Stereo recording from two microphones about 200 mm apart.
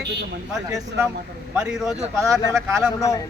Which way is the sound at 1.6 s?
5° right (ahead or behind).